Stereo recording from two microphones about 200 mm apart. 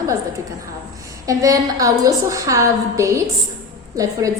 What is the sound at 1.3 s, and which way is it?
A woman's voice, 15° right (ahead or behind).